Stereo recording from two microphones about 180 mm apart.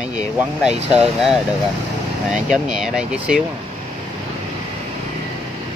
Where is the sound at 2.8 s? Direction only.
5° right (ahead or behind).